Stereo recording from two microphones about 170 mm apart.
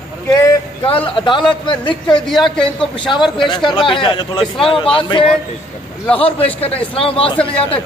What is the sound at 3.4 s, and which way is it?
Speech, 25° left (ahead or behind).